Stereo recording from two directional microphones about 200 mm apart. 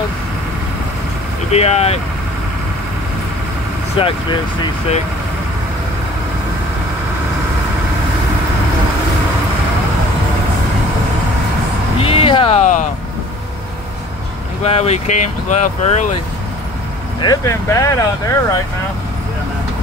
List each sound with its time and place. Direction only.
1.5 s speech: 30° left (ahead or behind)
4.0 s speech: 25° left (ahead or behind)
12.0 s speech: 30° left (ahead or behind)
14.6 s speech: 30° left (ahead or behind)
17.2 s speech: 15° left (ahead or behind)